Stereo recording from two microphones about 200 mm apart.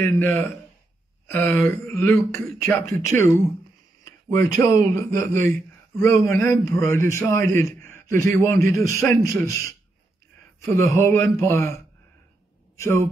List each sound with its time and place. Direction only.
0.0 s a man's voice: 10° left (ahead or behind)